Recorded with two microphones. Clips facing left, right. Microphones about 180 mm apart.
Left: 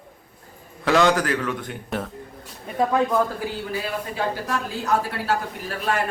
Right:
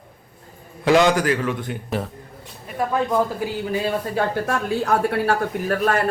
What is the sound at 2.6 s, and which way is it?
Speech, 20° left (ahead or behind).